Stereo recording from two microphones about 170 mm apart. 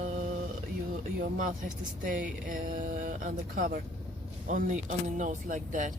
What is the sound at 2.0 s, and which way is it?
Speech, 50° right (ahead or behind).